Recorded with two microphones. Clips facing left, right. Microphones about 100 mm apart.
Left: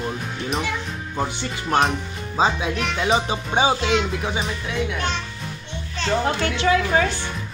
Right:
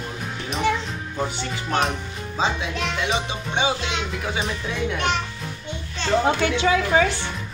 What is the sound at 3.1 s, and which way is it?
Speech, 35° left (ahead or behind).